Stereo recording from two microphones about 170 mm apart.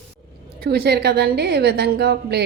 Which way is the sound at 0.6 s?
75° right (ahead or behind).